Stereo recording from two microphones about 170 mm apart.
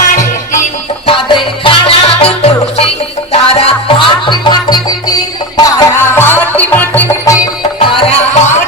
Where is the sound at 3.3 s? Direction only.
35° left (ahead or behind).